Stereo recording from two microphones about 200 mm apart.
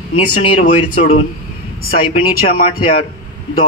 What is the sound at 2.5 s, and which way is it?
Speech, 30° left (ahead or behind).